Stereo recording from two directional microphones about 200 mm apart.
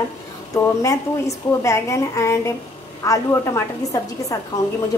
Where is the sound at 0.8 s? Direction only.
15° left (ahead or behind).